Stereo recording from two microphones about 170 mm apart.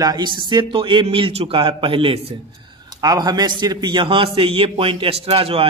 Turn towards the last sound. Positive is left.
turn(degrees=-35)  # may be behind; listen again after turning